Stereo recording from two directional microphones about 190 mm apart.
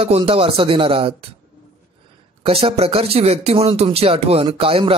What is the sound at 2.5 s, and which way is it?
Speech, 30° right (ahead or behind).